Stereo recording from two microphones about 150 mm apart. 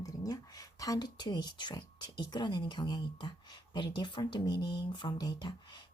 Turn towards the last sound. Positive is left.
turn(degrees=30)  # may be behind; listen again after turning